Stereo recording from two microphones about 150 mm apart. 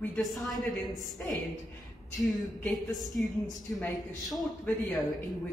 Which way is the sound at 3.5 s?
25° left (ahead or behind).